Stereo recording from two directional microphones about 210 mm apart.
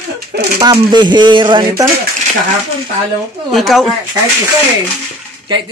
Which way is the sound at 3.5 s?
Centre (ahead or behind).